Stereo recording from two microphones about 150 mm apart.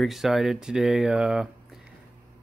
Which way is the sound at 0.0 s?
Centre (ahead or behind).